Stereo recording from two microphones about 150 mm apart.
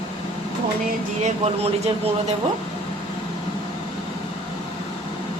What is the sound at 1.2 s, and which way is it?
Speech, 45° right (ahead or behind).